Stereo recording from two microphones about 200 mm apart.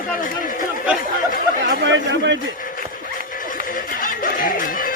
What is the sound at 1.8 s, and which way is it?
Speech, 65° right (ahead or behind).